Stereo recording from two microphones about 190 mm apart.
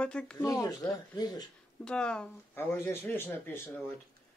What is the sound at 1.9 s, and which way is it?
Speech, 5° left (ahead or behind).